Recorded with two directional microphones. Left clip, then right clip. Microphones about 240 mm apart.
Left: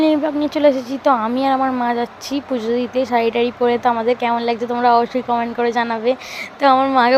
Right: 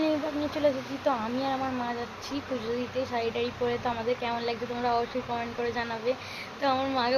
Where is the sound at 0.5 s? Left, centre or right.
Left.